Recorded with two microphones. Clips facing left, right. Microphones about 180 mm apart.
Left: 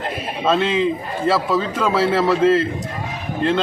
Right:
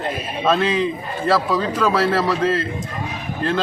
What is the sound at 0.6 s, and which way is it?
Speech, 25° left (ahead or behind).